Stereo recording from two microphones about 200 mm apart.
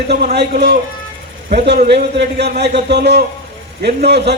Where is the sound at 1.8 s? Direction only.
55° right (ahead or behind).